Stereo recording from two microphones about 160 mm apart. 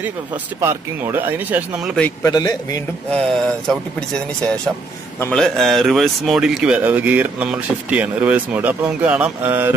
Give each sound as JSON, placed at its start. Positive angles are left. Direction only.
{"t": 0.0, "sound": "speech", "side_deg": -15}
{"t": 2.2, "sound": "a man's voice", "side_deg": 25}
{"t": 3.1, "sound": "speech", "side_deg": 5}
{"t": 5.3, "sound": "speech", "side_deg": 0}